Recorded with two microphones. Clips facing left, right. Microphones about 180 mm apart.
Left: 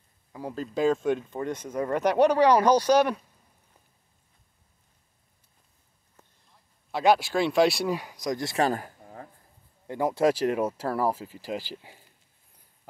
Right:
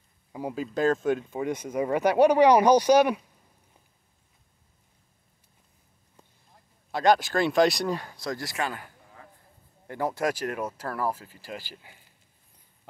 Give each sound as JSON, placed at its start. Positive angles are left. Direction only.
{"t": 0.3, "sound": "speech", "side_deg": -15}
{"t": 0.7, "sound": "speech", "side_deg": 0}
{"t": 6.9, "sound": "speech", "side_deg": 5}
{"t": 8.5, "sound": "a sound", "side_deg": 40}
{"t": 9.8, "sound": "speech", "side_deg": 20}
{"t": 10.2, "sound": "speech", "side_deg": 30}